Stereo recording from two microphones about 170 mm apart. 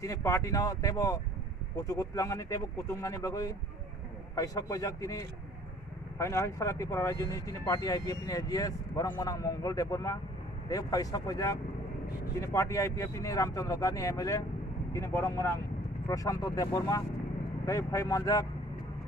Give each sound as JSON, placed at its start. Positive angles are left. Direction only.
{"t": 0.0, "sound": "speech", "side_deg": 20}